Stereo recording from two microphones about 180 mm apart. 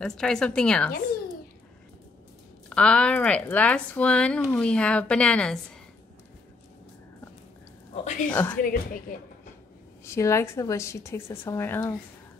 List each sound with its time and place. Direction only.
0.0 s a woman's voice: 5° left (ahead or behind)
2.7 s a woman's voice: 5° left (ahead or behind)
7.9 s speech: 40° left (ahead or behind)
8.3 s a woman's voice: 10° left (ahead or behind)
10.0 s a woman's voice: 15° left (ahead or behind)